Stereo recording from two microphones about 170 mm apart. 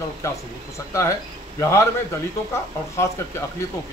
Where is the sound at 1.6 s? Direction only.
15° left (ahead or behind).